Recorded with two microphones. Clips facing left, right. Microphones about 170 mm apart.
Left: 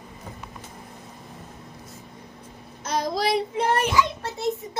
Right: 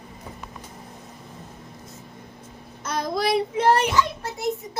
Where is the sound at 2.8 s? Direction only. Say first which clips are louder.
Even; 55° right (ahead or behind).